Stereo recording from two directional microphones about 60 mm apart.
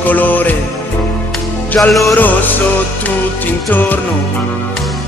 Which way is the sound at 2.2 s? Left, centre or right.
Left.